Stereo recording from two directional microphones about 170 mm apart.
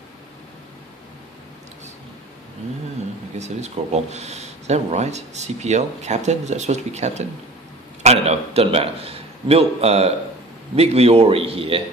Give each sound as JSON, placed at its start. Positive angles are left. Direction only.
{"t": 3.3, "sound": "a man's voice", "side_deg": -40}